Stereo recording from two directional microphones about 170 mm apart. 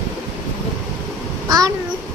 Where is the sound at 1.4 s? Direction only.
20° right (ahead or behind).